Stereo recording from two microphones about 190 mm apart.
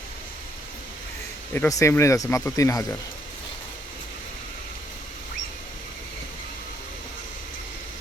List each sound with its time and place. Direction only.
1.5 s speech: 15° left (ahead or behind)